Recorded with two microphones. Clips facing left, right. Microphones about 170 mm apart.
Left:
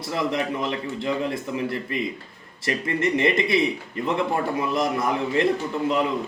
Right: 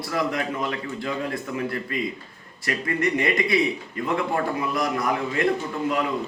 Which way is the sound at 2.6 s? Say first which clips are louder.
Left 1 dB; 25° left (ahead or behind).